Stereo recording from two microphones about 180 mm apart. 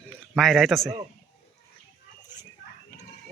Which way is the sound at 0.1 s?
Centre (ahead or behind).